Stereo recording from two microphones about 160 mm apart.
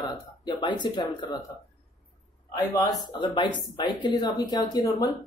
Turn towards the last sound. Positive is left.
turn(degrees=25)  # may be behind; listen again after turning